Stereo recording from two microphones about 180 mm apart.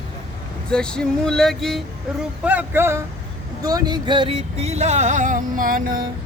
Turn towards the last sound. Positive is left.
turn(degrees=-50)  # may be behind; listen again after turning